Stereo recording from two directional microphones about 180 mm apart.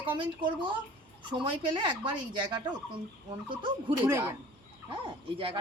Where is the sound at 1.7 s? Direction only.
25° right (ahead or behind).